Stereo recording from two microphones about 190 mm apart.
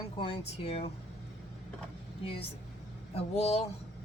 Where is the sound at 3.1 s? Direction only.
35° left (ahead or behind).